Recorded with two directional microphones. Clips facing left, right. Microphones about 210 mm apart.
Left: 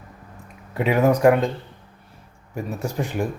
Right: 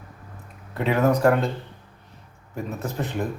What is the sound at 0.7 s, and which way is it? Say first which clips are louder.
Speech: left 2 dB; 15° left (ahead or behind).